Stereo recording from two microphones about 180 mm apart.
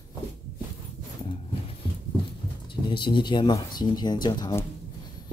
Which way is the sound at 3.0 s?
25° left (ahead or behind).